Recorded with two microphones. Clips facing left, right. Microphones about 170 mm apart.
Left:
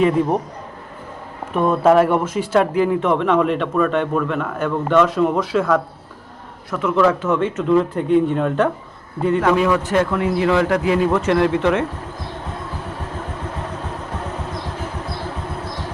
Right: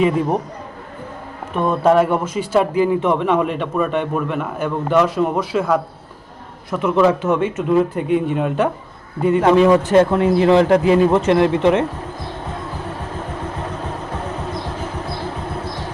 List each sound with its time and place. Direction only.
1.5 s speech: 5° left (ahead or behind)
6.7 s a man's voice: 20° right (ahead or behind)
9.4 s a man's voice: 30° right (ahead or behind)